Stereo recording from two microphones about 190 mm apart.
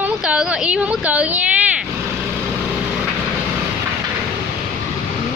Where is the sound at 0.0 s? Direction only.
5° right (ahead or behind).